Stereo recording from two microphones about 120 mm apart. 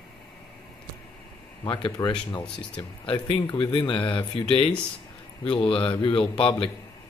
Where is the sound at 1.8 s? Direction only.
40° left (ahead or behind).